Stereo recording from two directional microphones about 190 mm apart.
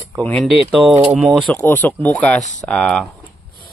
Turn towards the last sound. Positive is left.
turn(degrees=5)  # may be behind; listen again after turning